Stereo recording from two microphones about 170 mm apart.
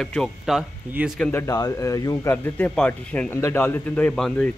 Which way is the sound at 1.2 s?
10° left (ahead or behind).